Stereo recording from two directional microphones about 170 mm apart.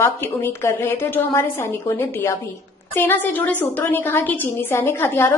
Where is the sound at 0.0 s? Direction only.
15° left (ahead or behind).